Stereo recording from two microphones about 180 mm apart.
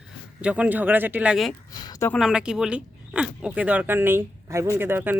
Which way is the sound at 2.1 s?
5° right (ahead or behind).